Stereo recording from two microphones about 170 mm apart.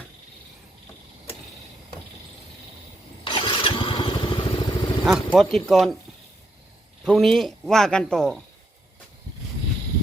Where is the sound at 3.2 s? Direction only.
30° left (ahead or behind).